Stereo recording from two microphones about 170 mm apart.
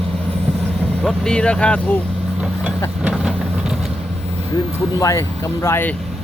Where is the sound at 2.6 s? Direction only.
5° right (ahead or behind).